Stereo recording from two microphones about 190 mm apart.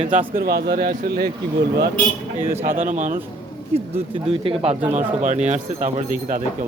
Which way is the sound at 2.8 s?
40° right (ahead or behind).